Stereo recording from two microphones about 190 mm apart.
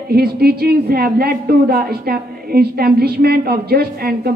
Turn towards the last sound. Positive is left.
turn(degrees=-55)  # may be behind; listen again after turning